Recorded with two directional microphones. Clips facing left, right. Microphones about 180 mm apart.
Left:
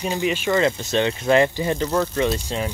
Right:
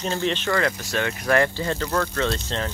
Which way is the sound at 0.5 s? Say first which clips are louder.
Left 4 dB; 20° left (ahead or behind).